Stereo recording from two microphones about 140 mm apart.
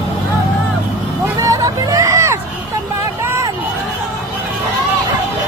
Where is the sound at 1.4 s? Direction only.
25° right (ahead or behind).